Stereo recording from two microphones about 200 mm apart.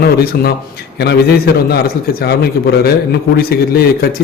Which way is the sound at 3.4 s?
50° left (ahead or behind).